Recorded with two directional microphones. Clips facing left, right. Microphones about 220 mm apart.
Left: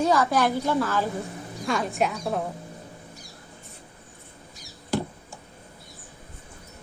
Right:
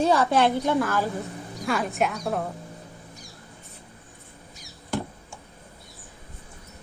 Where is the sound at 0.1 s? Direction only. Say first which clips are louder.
Right 1 dB; 30° right (ahead or behind).